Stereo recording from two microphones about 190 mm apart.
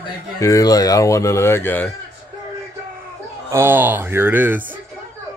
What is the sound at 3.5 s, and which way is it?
Speech, 10° right (ahead or behind).